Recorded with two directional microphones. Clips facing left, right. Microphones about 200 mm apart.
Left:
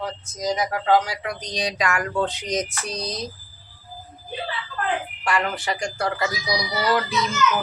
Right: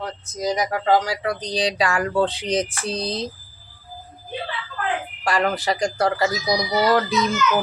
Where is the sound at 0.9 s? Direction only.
35° right (ahead or behind).